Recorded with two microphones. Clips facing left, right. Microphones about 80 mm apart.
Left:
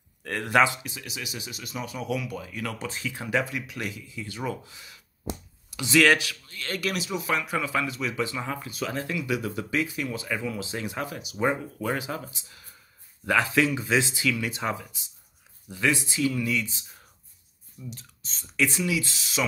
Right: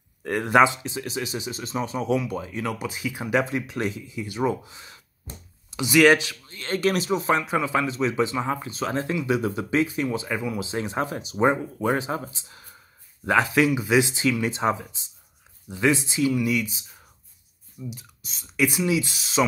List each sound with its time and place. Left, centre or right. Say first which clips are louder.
0.2 s speech: right 4 dB; right
3.5 s speech: right 6 dB; right; by 16.8 s centre
17.8 s speech: right 4 dB; centre